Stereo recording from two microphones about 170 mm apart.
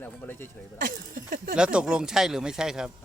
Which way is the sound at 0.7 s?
55° right (ahead or behind).